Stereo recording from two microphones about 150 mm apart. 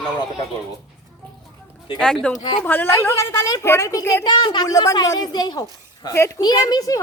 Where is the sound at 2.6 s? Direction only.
15° left (ahead or behind).